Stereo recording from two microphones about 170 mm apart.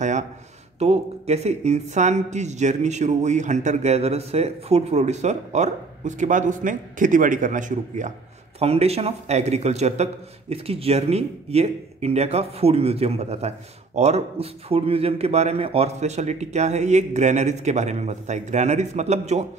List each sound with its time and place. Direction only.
0.7 s speech: 40° right (ahead or behind)
8.5 s a man's voice: 40° right (ahead or behind)